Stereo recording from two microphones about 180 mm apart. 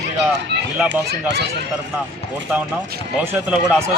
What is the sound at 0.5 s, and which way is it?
Speech, 70° right (ahead or behind).